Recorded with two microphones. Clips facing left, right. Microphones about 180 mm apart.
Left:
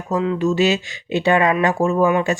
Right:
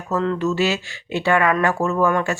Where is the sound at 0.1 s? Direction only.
10° left (ahead or behind).